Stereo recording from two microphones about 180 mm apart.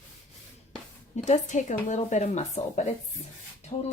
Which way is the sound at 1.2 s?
40° left (ahead or behind).